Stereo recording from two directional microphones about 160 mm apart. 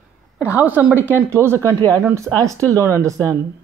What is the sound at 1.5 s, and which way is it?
Speech, 15° left (ahead or behind).